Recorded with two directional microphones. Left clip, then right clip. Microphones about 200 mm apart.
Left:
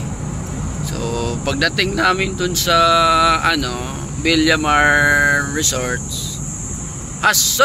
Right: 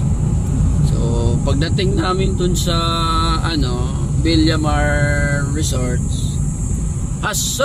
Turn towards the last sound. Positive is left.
turn(degrees=0)  # may be behind; listen again after turning